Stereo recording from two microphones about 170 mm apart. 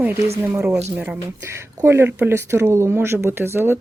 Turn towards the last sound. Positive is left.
turn(degrees=-15)  # may be behind; listen again after turning